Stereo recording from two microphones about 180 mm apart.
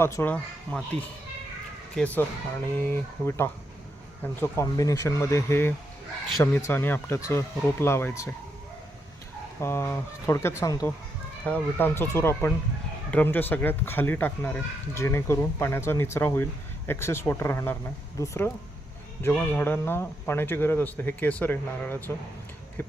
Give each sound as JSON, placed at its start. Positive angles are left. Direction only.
{"t": 0.0, "sound": "speech", "side_deg": 15}
{"t": 2.0, "sound": "speech", "side_deg": 10}
{"t": 9.6, "sound": "speech", "side_deg": 15}